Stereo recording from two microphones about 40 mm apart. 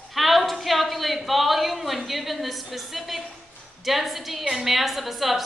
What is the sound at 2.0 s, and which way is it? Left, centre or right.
A woman's voice, centre.